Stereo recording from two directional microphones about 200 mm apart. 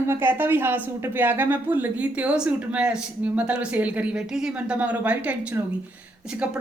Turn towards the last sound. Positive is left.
turn(degrees=-5)  # may be behind; listen again after turning